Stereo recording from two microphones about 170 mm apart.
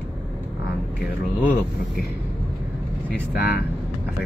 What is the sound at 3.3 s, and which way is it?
Speech, 70° left (ahead or behind).